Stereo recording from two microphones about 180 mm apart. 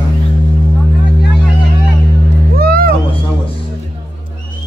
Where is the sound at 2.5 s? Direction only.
55° right (ahead or behind).